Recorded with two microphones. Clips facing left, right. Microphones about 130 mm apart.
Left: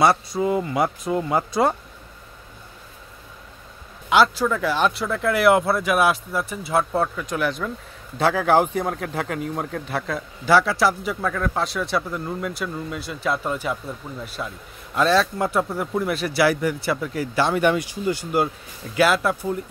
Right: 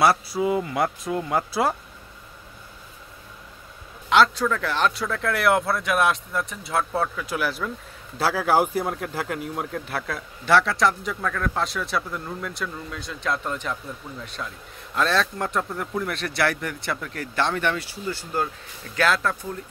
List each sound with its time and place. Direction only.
0.0 s speech: 5° right (ahead or behind)
4.1 s speech: 5° left (ahead or behind)